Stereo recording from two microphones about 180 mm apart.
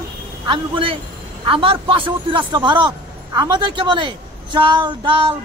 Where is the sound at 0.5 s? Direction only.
30° right (ahead or behind).